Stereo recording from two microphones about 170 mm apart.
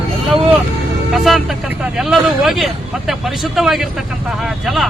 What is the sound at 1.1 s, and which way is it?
Speech, centre (ahead or behind).